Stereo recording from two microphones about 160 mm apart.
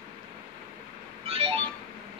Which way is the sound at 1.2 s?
35° right (ahead or behind).